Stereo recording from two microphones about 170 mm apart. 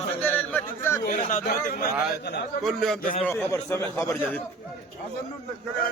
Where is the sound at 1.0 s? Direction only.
50° left (ahead or behind).